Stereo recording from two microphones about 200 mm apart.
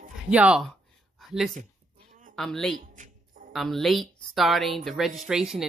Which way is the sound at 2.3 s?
Centre (ahead or behind).